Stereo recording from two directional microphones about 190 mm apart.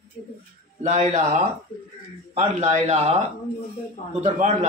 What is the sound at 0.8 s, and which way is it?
A man's voice, 40° right (ahead or behind).